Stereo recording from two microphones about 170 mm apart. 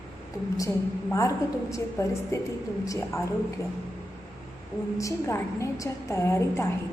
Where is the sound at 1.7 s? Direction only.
15° left (ahead or behind).